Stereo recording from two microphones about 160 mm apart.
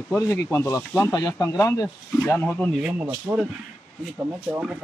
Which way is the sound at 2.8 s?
10° right (ahead or behind).